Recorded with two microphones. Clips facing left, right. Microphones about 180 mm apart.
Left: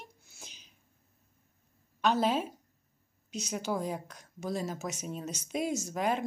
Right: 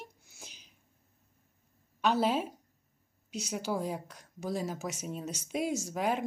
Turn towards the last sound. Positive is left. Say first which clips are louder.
# even
turn(degrees=-10)  # may be behind; listen again after turning